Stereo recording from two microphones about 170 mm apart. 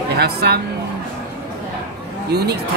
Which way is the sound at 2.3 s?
75° right (ahead or behind).